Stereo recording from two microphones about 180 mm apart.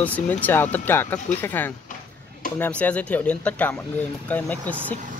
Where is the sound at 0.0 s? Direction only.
10° left (ahead or behind).